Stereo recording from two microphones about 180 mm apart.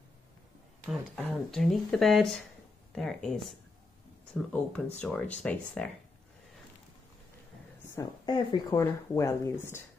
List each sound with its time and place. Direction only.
0.8 s speech: centre (ahead or behind)
7.9 s speech: 20° left (ahead or behind)